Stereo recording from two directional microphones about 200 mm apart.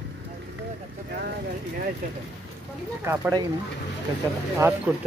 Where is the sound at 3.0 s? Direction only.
15° right (ahead or behind).